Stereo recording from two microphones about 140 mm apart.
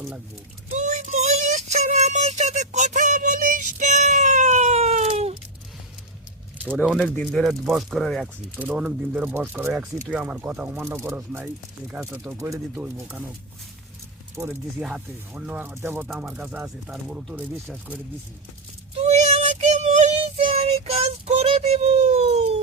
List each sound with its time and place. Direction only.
0.7 s child singing: 60° right (ahead or behind)
6.7 s speech: centre (ahead or behind)
8.5 s speech: 10° right (ahead or behind)
10.8 s speech: 20° right (ahead or behind)
14.4 s speech: 5° right (ahead or behind)
16.0 s speech: 5° right (ahead or behind)
18.9 s child singing: 50° right (ahead or behind)
21.4 s a sound: 45° right (ahead or behind)